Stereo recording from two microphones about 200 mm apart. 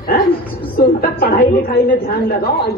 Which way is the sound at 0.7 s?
50° left (ahead or behind).